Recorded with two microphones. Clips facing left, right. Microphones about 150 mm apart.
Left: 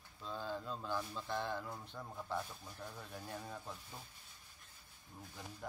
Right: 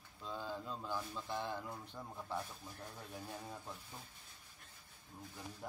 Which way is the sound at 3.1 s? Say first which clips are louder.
Right 1 dB; 5° right (ahead or behind).